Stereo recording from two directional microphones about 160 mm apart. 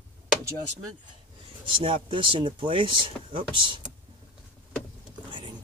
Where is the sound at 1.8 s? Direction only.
35° right (ahead or behind).